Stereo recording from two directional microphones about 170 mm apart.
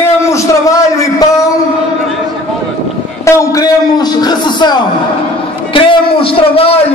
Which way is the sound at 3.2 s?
20° left (ahead or behind).